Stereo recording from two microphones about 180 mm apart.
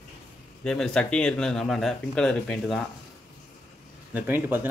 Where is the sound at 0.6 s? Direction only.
5° left (ahead or behind).